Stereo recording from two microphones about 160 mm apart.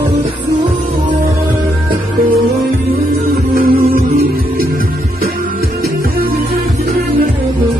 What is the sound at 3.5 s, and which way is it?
Music, 65° right (ahead or behind).